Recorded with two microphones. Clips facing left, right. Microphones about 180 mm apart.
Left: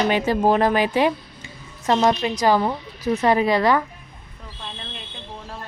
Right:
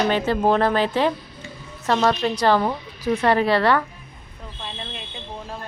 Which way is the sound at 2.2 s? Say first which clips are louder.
Even; 10° left (ahead or behind).